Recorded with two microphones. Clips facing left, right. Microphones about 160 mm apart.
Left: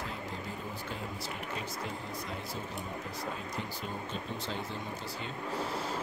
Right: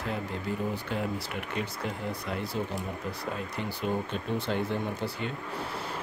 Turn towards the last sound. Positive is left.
turn(degrees=-60)  # may be behind; listen again after turning